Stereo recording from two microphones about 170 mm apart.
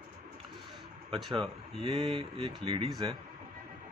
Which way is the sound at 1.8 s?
35° right (ahead or behind).